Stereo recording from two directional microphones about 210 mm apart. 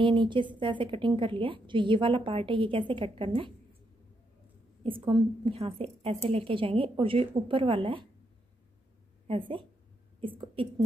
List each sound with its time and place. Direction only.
0.0 s a woman's voice: 25° right (ahead or behind)
4.8 s a woman's voice: 25° right (ahead or behind)
9.3 s a woman's voice: 25° right (ahead or behind)